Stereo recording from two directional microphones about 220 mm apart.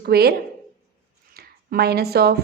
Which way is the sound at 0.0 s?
45° right (ahead or behind).